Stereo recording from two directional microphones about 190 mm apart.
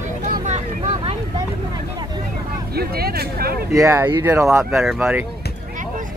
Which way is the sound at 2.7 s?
55° right (ahead or behind).